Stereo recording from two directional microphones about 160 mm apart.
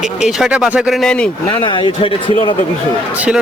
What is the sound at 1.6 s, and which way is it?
Speech, 30° left (ahead or behind).